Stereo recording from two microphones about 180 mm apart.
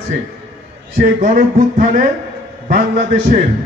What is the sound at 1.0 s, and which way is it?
A man's voice, 45° right (ahead or behind).